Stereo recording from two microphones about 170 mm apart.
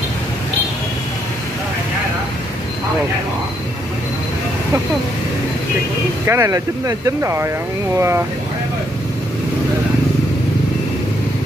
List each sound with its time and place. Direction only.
6.2 s speech: 15° right (ahead or behind)